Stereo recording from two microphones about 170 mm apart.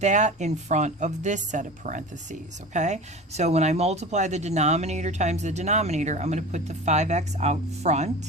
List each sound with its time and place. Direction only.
0.0 s speech: 45° right (ahead or behind)